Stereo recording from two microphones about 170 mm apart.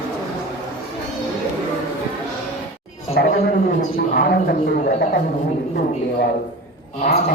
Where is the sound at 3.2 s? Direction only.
75° left (ahead or behind).